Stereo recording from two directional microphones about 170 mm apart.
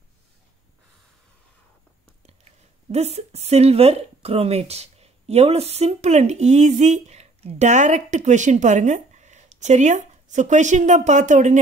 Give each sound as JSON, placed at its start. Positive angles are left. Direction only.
{"t": 2.2, "sound": "speech", "side_deg": -40}